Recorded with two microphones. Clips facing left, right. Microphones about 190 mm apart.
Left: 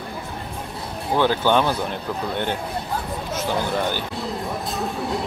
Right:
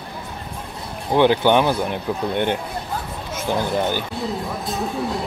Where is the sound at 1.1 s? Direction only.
15° right (ahead or behind).